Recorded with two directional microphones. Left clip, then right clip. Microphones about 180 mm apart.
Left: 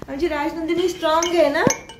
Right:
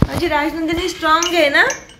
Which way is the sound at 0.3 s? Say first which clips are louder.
Right 6 dB; 25° right (ahead or behind).